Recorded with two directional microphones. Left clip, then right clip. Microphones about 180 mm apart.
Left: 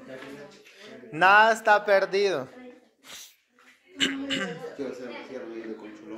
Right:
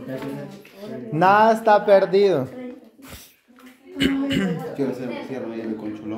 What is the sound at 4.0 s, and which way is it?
Speech, 15° right (ahead or behind).